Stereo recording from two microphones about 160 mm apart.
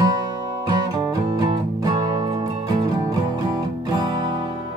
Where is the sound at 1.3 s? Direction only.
25° right (ahead or behind).